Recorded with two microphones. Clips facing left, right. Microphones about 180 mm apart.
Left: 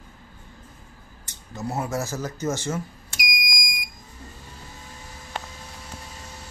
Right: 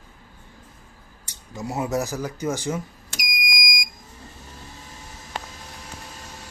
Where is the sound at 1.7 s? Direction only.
15° right (ahead or behind).